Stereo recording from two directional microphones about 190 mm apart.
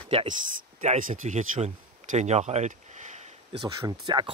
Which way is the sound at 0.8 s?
40° right (ahead or behind).